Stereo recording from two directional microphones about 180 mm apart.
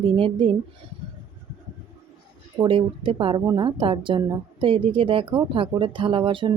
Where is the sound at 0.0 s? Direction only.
30° right (ahead or behind).